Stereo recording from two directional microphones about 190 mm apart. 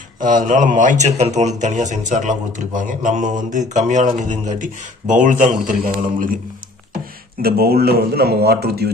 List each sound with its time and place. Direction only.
0.5 s a man's voice: 40° right (ahead or behind)
7.4 s speech: 55° right (ahead or behind)